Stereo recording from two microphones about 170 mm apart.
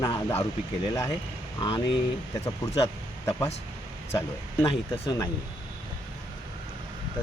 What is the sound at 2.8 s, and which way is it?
Speech, 15° left (ahead or behind).